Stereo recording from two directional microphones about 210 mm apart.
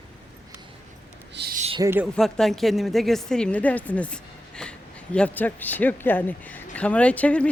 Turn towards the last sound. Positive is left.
turn(degrees=5)  # may be behind; listen again after turning